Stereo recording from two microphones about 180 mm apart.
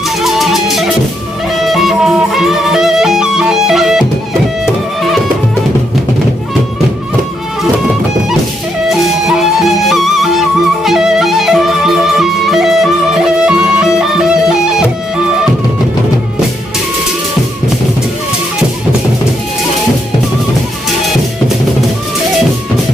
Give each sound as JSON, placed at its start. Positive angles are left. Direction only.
{"t": 0.2, "sound": "music", "side_deg": 0}
{"t": 9.4, "sound": "music", "side_deg": 0}